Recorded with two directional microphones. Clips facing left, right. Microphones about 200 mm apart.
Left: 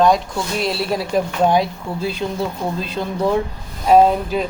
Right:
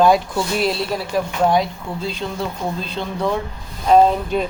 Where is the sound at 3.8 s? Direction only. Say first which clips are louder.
Left 1 dB; 5° left (ahead or behind).